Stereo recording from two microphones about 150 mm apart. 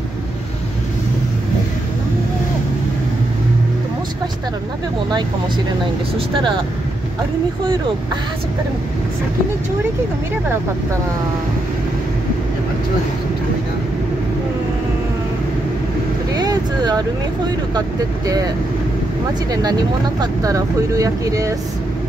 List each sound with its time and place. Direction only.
6.1 s speech: 30° right (ahead or behind)
16.3 s vehicle: 25° right (ahead or behind)
17.7 s speech: 25° right (ahead or behind)
19.5 s speech: 25° right (ahead or behind)